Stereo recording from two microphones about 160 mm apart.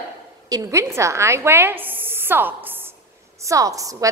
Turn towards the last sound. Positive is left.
turn(degrees=-20)  # may be behind; listen again after turning